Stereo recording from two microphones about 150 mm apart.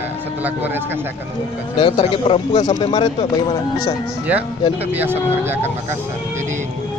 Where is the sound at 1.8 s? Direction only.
35° left (ahead or behind).